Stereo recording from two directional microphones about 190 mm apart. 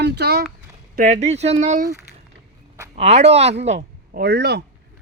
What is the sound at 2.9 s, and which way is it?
Speech, 35° right (ahead or behind).